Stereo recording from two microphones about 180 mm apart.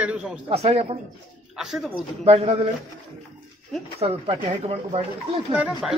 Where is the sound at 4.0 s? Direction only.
35° right (ahead or behind).